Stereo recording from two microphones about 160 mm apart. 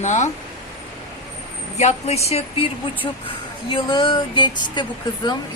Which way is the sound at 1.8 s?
40° left (ahead or behind).